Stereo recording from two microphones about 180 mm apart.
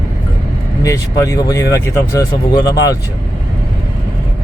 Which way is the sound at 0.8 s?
15° left (ahead or behind).